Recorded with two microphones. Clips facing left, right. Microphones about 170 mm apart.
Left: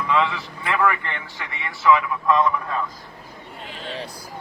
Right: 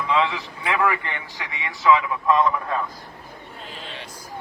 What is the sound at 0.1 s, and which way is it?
A man's voice, 20° right (ahead or behind).